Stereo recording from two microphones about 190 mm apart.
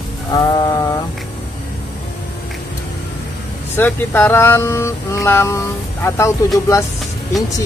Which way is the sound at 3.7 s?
10° left (ahead or behind).